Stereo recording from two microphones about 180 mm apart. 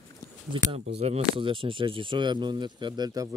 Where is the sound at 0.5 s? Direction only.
30° right (ahead or behind).